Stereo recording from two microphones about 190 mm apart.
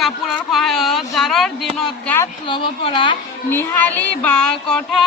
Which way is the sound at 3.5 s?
10° left (ahead or behind).